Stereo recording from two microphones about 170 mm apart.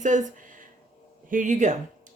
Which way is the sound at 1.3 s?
45° right (ahead or behind).